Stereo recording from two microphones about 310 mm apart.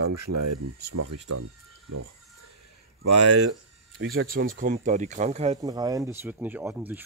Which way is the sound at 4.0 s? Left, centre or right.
Right.